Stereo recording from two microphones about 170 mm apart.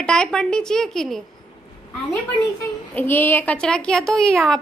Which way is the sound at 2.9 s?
10° left (ahead or behind).